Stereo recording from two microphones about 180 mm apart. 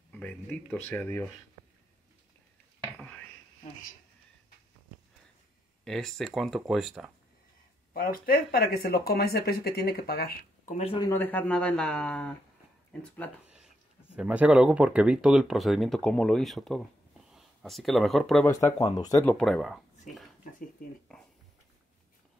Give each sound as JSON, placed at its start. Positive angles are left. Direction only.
{"t": 0.1, "sound": "speech", "side_deg": 10}
{"t": 5.9, "sound": "speech", "side_deg": 0}
{"t": 7.9, "sound": "speech", "side_deg": 55}
{"t": 10.6, "sound": "speech", "side_deg": 40}
{"t": 11.0, "sound": "speech", "side_deg": 15}
{"t": 14.1, "sound": "speech", "side_deg": -5}
{"t": 18.5, "sound": "speech", "side_deg": 20}
{"t": 19.2, "sound": "speech", "side_deg": 5}
{"t": 21.1, "sound": "a sound", "side_deg": 5}